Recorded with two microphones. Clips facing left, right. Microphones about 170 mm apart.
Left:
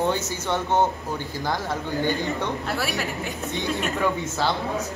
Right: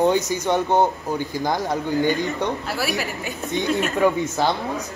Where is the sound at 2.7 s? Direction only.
5° right (ahead or behind).